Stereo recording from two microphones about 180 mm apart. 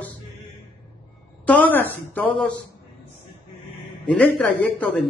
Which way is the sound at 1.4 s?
10° left (ahead or behind).